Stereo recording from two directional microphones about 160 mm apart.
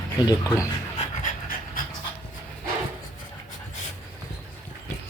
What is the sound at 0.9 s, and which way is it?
Pant, 55° left (ahead or behind).